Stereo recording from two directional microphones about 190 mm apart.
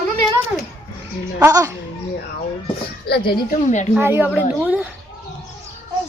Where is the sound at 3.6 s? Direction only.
40° left (ahead or behind).